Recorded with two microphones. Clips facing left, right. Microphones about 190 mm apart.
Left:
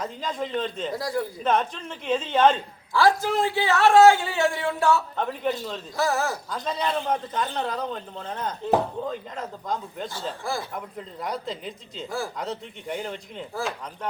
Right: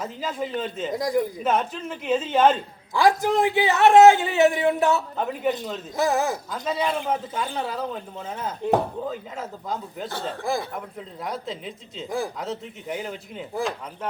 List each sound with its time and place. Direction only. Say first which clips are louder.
0.0 s a man's voice: right 1 dB; 5° right (ahead or behind)
0.9 s a man's voice: right 6 dB; 15° right (ahead or behind)
1.5 s a man's voice: even; 5° right (ahead or behind)
2.9 s a man's voice: right 1 dB; 15° right (ahead or behind)
5.1 s a man's voice: right 2 dB; 5° right (ahead or behind)
6.0 s a man's voice: right 2 dB; 20° right (ahead or behind)
6.5 s a man's voice: right 2 dB; 5° right (ahead or behind)
12.0 s a man's voice: right 3 dB; 20° right (ahead or behind)
12.4 s a man's voice: right 1 dB; 5° right (ahead or behind)